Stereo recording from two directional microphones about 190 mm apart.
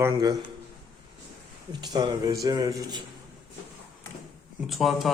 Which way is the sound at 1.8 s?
20° right (ahead or behind).